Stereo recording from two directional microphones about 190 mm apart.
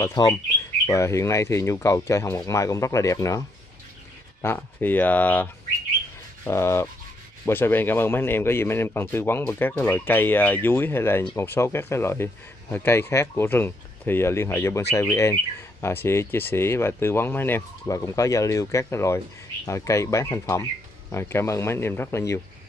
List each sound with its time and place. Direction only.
0.0 s speech: 20° left (ahead or behind)